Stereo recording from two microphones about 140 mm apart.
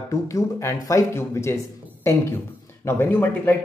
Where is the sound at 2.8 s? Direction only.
15° left (ahead or behind).